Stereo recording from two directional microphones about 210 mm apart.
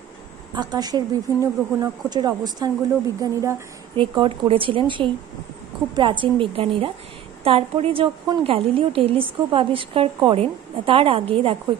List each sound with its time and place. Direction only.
0.6 s a woman's voice: 20° right (ahead or behind)
3.9 s a woman's voice: 25° right (ahead or behind)